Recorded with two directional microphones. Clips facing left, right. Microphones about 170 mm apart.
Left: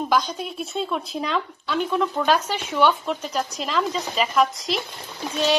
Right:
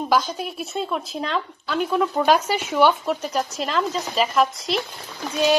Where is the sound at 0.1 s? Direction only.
5° right (ahead or behind).